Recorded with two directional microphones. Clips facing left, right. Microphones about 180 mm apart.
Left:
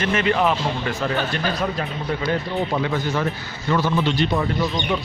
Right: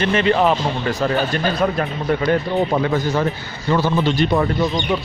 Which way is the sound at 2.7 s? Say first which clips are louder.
Right 4 dB; 45° right (ahead or behind).